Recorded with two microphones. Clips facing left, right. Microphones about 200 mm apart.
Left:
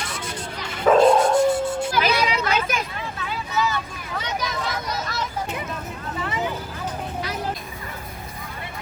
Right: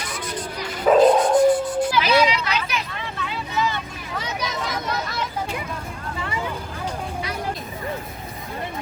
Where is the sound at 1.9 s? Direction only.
45° left (ahead or behind).